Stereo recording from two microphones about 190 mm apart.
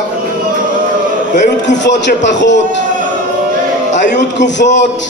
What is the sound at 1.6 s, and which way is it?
A man's voice, 65° left (ahead or behind).